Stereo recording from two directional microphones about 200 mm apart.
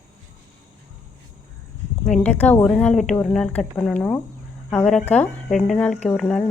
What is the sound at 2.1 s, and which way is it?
A woman's voice, 10° left (ahead or behind).